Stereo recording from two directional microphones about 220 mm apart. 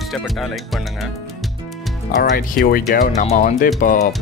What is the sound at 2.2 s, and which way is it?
Speech, 40° left (ahead or behind).